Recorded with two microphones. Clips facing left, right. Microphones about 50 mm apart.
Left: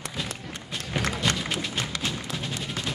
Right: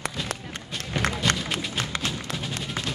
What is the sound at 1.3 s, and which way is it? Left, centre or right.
Music, centre.